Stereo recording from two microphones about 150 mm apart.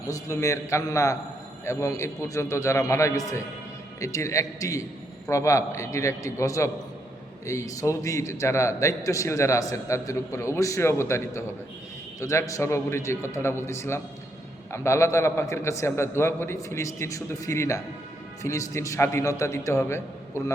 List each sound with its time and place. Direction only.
0.1 s a man's voice: 20° left (ahead or behind)